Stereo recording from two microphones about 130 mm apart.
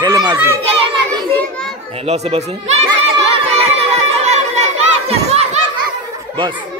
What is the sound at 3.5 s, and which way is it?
Crowd, 55° right (ahead or behind).